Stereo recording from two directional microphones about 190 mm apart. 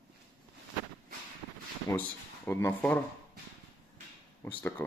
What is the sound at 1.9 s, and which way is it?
Speech, 15° left (ahead or behind).